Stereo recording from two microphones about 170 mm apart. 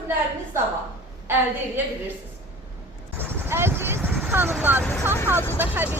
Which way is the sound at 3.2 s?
15° right (ahead or behind).